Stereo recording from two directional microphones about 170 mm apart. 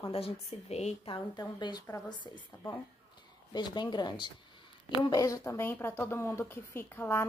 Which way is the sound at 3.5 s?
25° left (ahead or behind).